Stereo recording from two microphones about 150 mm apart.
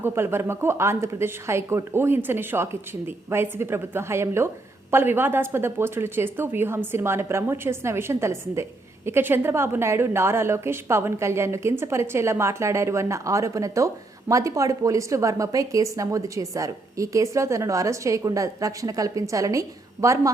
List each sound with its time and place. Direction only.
0.0 s a woman's voice: 15° right (ahead or behind)